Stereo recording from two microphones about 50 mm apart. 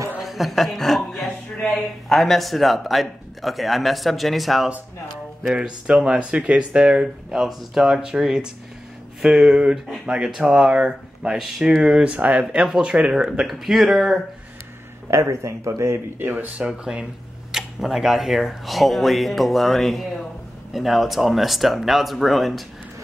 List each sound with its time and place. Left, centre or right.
0.2 s a woman's voice: centre
5.5 s speech: centre
11.3 s a man's voice: centre
11.8 s speech: centre
13.5 s a man's voice: centre
15.0 s speech: right
16.2 s speech: right
16.6 s a man's voice: centre